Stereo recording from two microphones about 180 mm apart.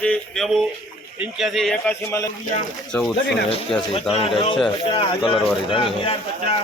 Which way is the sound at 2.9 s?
5° left (ahead or behind).